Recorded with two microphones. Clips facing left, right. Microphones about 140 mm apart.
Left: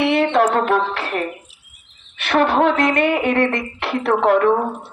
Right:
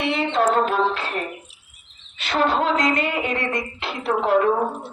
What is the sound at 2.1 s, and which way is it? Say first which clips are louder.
Speech: left 5 dB; 65° left (ahead or behind).